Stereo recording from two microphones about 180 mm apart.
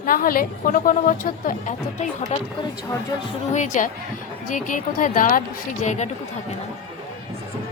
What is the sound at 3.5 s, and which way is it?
A woman's voice, 40° left (ahead or behind).